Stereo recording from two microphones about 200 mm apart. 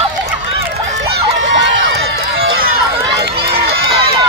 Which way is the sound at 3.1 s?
50° right (ahead or behind).